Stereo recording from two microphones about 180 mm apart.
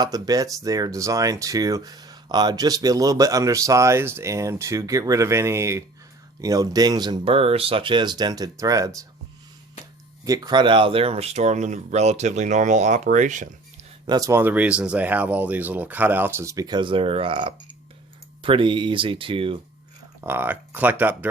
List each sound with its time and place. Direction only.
0.0 s speech: 20° right (ahead or behind)
10.2 s speech: 20° right (ahead or behind); by 13.5 s 45° right (ahead or behind)
14.1 s speech: 20° right (ahead or behind)
20.2 s speech: 10° right (ahead or behind)